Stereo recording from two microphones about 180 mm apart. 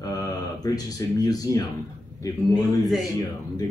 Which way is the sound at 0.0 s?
20° left (ahead or behind).